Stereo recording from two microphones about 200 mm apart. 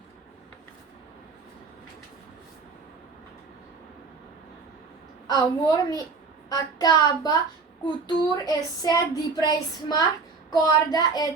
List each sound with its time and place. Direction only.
5.3 s child singing: 20° left (ahead or behind)